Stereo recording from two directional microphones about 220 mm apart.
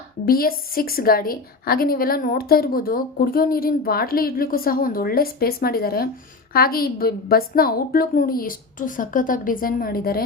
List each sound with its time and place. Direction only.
0.3 s a woman's voice: 40° left (ahead or behind)